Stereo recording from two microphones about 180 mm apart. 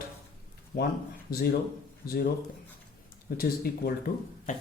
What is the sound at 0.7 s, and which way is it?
Speech, 55° left (ahead or behind).